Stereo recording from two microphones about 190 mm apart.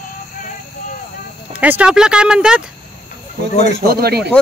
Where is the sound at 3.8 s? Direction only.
55° right (ahead or behind).